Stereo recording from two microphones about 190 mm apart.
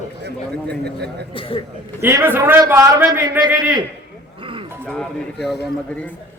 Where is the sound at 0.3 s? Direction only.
60° right (ahead or behind).